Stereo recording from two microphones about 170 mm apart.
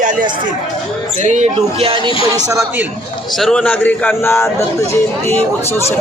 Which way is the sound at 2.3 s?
20° right (ahead or behind).